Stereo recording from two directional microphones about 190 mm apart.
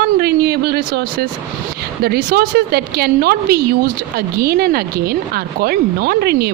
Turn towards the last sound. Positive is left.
turn(degrees=-55)  # may be behind; listen again after turning